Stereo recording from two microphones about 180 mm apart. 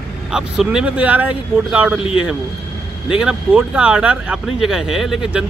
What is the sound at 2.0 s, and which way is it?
Speech, 30° left (ahead or behind).